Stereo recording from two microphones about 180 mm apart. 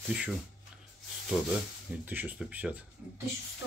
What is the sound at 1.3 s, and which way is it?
Speech, 5° right (ahead or behind).